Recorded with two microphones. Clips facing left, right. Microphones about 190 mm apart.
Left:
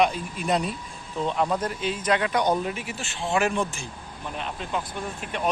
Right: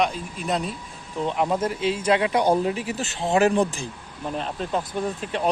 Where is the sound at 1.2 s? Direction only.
15° right (ahead or behind).